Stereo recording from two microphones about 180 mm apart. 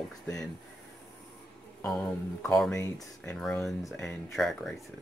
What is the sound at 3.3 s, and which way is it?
Speech, 5° left (ahead or behind).